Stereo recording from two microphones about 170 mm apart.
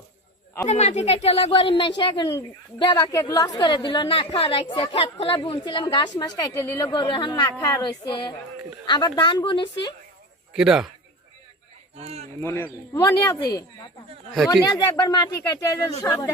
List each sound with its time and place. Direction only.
0.7 s a woman's voice: 40° left (ahead or behind)
10.5 s a man's voice: 5° right (ahead or behind)
11.9 s a man's voice: 40° right (ahead or behind)
12.4 s speech: 15° left (ahead or behind)
14.7 s a woman's voice: 25° left (ahead or behind)